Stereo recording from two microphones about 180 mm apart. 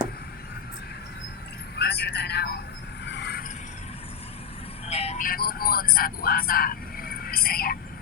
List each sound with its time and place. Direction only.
1.7 s speech: 65° left (ahead or behind)
3.0 s vehicle: 75° left (ahead or behind)
4.9 s vehicle: 35° left (ahead or behind)
5.2 s speech: 55° left (ahead or behind)